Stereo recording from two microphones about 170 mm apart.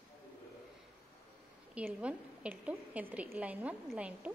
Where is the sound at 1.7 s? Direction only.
5° right (ahead or behind).